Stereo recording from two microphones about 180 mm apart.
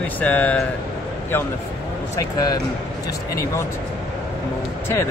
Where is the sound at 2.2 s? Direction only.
20° left (ahead or behind).